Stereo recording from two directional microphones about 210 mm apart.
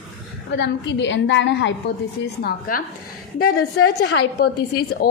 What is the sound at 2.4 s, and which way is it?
A woman's voice, 40° left (ahead or behind).